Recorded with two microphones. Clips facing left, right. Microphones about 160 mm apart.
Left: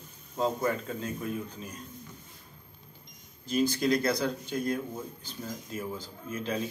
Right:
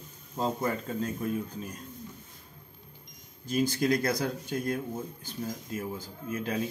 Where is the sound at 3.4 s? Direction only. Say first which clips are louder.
Even; 50° right (ahead or behind).